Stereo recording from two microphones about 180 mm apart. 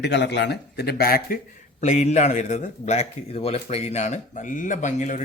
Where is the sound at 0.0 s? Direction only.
70° left (ahead or behind); by 1.4 s 55° left (ahead or behind).